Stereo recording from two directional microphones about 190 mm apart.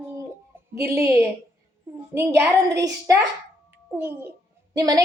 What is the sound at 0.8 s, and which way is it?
Speech, 15° right (ahead or behind).